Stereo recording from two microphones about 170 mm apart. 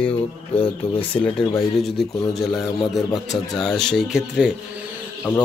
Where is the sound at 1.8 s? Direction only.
Centre (ahead or behind).